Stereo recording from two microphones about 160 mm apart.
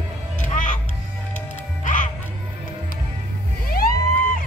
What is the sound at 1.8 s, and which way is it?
Music, 50° left (ahead or behind).